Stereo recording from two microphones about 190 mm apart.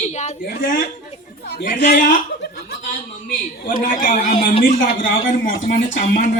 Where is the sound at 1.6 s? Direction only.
60° left (ahead or behind).